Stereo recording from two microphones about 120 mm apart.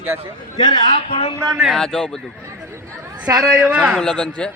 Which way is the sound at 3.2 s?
5° right (ahead or behind).